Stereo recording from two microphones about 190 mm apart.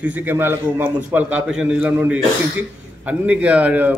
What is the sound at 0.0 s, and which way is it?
A man's voice, 10° right (ahead or behind).